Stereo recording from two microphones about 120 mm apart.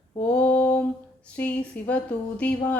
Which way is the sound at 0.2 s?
15° left (ahead or behind).